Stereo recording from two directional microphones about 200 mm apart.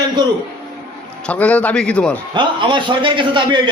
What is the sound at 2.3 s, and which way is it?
A man's voice, 25° right (ahead or behind).